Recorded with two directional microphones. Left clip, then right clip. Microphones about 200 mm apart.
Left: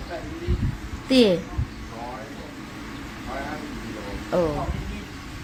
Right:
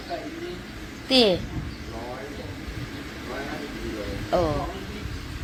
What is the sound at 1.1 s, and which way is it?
Speech, 30° left (ahead or behind).